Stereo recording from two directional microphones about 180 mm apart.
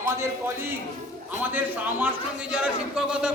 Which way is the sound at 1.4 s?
10° right (ahead or behind).